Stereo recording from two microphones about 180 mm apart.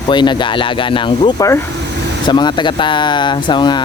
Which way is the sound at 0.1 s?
25° left (ahead or behind).